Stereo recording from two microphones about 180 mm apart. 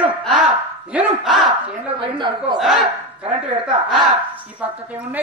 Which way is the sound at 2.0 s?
25° right (ahead or behind).